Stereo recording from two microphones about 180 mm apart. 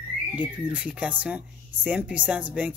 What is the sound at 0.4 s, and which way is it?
Speech, 5° right (ahead or behind).